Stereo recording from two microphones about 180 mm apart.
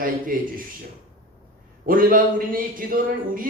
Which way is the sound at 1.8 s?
50° right (ahead or behind).